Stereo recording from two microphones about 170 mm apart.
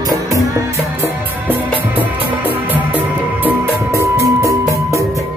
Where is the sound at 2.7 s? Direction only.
10° right (ahead or behind).